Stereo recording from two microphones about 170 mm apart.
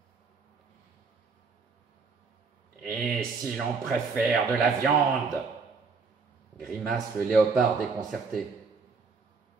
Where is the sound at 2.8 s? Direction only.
5° left (ahead or behind).